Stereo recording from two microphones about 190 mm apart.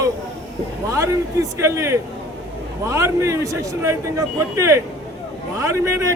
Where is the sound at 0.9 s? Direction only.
15° right (ahead or behind).